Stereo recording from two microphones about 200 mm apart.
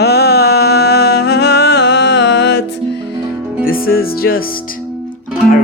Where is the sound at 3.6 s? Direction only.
45° left (ahead or behind).